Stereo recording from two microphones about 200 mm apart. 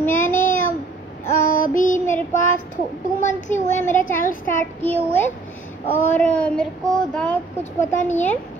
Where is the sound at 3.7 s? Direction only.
10° left (ahead or behind).